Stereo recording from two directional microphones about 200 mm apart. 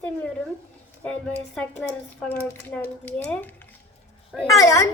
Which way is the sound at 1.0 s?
5° left (ahead or behind).